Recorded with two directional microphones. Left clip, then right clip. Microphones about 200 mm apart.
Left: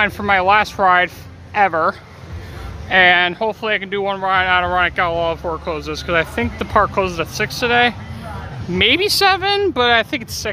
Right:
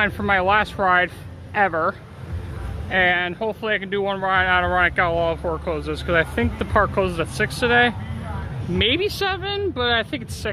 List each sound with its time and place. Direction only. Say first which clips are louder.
0.0 s speech: left 4 dB; 10° left (ahead or behind)